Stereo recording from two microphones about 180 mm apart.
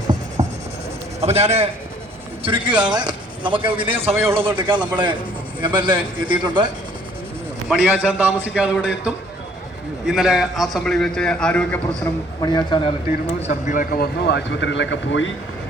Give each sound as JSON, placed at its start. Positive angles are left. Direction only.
{"t": 0.4, "sound": "a sound", "side_deg": -35}
{"t": 1.2, "sound": "a man's voice", "side_deg": -35}
{"t": 4.1, "sound": "a man's voice", "side_deg": -15}
{"t": 5.7, "sound": "a man's voice", "side_deg": -25}
{"t": 7.7, "sound": "a man's voice", "side_deg": -5}
{"t": 12.4, "sound": "speech", "side_deg": 25}
{"t": 13.4, "sound": "a man's voice", "side_deg": 45}